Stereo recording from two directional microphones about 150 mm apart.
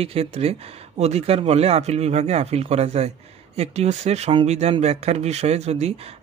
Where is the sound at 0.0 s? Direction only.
40° right (ahead or behind).